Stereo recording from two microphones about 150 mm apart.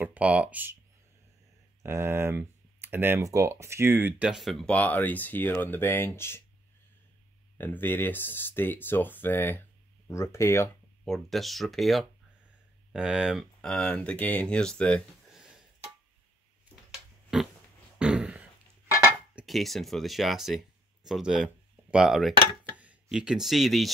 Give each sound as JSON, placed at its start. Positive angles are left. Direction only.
{"t": 0.0, "sound": "speech", "side_deg": -10}
{"t": 1.8, "sound": "speech", "side_deg": -15}
{"t": 7.5, "sound": "speech", "side_deg": 15}
{"t": 11.1, "sound": "speech", "side_deg": 0}
{"t": 17.3, "sound": "pig", "side_deg": 0}
{"t": 17.9, "sound": "beatboxing", "side_deg": -5}
{"t": 19.3, "sound": "speech", "side_deg": 0}